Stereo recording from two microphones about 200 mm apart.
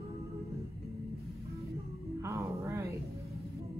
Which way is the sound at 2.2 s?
15° right (ahead or behind).